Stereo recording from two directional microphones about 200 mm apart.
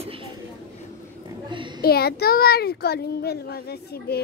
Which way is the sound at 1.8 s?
50° left (ahead or behind).